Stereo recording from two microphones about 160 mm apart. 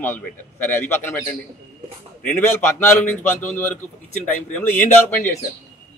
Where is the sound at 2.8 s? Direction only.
15° left (ahead or behind).